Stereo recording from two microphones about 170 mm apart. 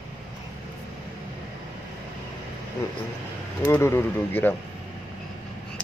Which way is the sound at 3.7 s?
15° left (ahead or behind).